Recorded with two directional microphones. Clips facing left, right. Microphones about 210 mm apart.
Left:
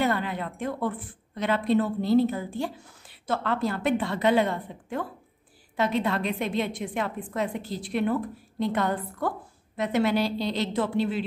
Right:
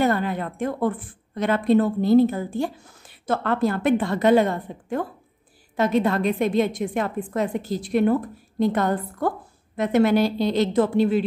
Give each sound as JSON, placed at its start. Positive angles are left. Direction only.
{"t": 0.0, "sound": "speech", "side_deg": -45}